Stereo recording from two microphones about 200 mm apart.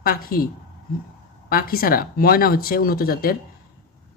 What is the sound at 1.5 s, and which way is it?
Speech, 45° left (ahead or behind).